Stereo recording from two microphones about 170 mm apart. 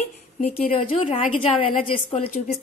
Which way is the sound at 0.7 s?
30° left (ahead or behind).